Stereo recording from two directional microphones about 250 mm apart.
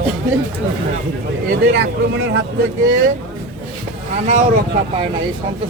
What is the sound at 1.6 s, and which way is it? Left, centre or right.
Speech, right.